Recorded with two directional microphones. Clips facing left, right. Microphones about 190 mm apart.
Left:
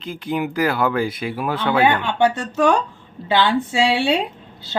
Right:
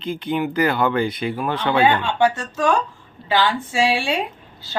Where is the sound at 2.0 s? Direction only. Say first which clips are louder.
Left 1 dB; 20° left (ahead or behind).